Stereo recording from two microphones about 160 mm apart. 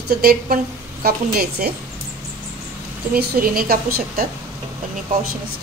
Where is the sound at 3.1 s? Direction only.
70° right (ahead or behind).